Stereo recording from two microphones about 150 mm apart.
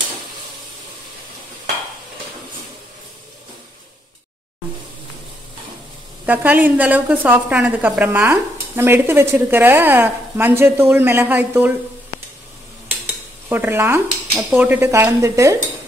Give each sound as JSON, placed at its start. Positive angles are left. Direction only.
{"t": 6.2, "sound": "a woman's voice", "side_deg": -10}
{"t": 13.5, "sound": "a woman's voice", "side_deg": -15}